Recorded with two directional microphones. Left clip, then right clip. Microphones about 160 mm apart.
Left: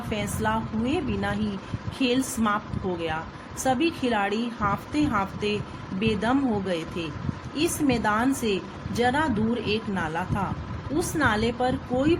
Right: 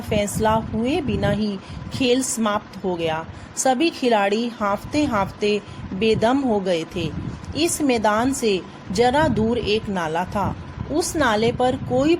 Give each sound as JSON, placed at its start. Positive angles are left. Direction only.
{"t": 0.1, "sound": "a woman's voice", "side_deg": -45}
{"t": 3.6, "sound": "a woman's voice", "side_deg": -45}